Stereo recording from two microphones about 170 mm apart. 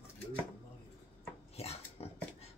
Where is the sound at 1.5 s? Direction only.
35° left (ahead or behind).